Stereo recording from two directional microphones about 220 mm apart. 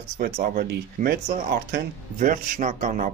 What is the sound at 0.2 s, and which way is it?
Speech, 40° right (ahead or behind).